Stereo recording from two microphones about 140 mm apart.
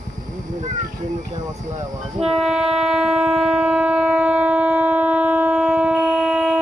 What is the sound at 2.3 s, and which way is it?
Shofar, centre (ahead or behind).